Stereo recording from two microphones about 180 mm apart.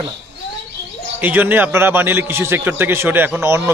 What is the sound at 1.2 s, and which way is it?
A man's voice, 10° right (ahead or behind).